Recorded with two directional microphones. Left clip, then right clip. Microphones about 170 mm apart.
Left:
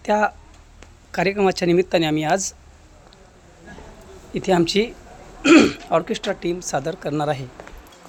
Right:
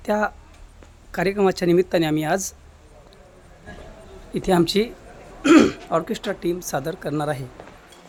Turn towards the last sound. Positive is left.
turn(degrees=-10)  # may be behind; listen again after turning